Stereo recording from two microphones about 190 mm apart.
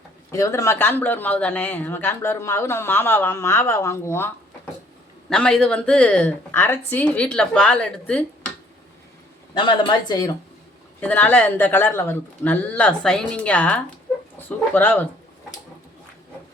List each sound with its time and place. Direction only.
0.3 s speech: 15° left (ahead or behind)
5.3 s a woman's voice: 5° left (ahead or behind)
9.6 s speech: 25° left (ahead or behind)
11.0 s speech: 10° left (ahead or behind)